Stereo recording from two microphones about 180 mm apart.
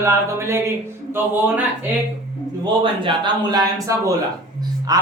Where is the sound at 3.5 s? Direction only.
20° right (ahead or behind).